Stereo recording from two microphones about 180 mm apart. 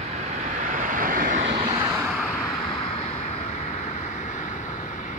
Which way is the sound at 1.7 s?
10° right (ahead or behind).